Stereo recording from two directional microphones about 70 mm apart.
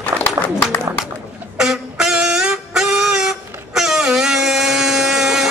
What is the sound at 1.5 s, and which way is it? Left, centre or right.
Music, centre.